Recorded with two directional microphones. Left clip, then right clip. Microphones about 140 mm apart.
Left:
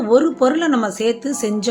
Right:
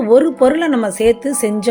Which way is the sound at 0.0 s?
30° right (ahead or behind).